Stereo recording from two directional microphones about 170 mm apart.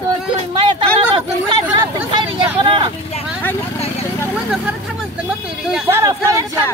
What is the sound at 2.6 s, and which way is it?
Vehicle, 30° right (ahead or behind).